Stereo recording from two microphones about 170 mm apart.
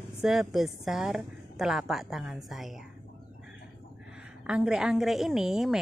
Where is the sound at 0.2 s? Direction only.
Centre (ahead or behind).